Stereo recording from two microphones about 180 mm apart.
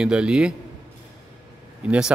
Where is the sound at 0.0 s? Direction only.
5° right (ahead or behind).